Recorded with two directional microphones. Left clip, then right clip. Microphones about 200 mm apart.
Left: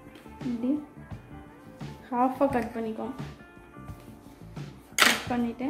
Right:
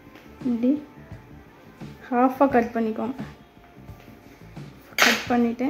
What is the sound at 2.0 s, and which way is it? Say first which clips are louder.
A woman's voice: right 5 dB; 45° right (ahead or behind).